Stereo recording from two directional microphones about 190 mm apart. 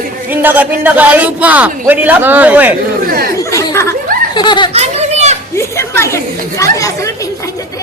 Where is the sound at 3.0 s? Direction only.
50° right (ahead or behind).